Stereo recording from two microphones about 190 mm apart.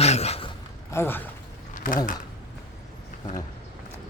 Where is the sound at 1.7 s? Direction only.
45° left (ahead or behind).